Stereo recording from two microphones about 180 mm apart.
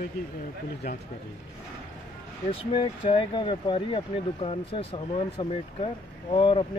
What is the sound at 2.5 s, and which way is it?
Speech, 30° left (ahead or behind).